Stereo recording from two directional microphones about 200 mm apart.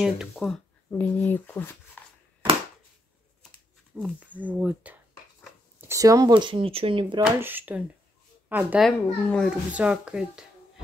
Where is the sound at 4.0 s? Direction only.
5° right (ahead or behind); by 7.2 s 25° right (ahead or behind).